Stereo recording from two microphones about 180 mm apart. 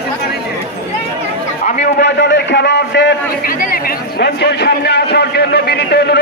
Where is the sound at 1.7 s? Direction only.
50° left (ahead or behind); by 3.5 s 70° left (ahead or behind).